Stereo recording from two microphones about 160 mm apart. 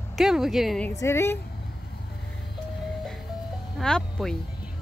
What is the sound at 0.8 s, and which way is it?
Speech, 15° left (ahead or behind).